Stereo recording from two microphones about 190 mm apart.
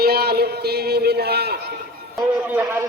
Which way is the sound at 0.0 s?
55° right (ahead or behind).